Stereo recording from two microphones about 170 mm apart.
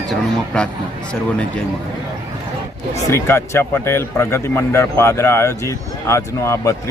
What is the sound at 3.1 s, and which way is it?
Speech, 15° left (ahead or behind).